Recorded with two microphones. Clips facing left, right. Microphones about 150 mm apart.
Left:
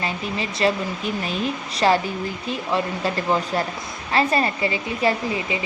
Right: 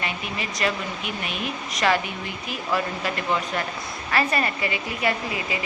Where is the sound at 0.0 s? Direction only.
30° left (ahead or behind).